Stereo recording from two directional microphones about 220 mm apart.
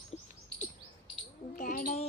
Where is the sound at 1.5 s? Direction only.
40° left (ahead or behind).